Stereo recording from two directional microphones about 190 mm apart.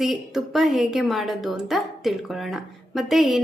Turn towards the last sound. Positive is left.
turn(degrees=0)  # may be behind; listen again after turning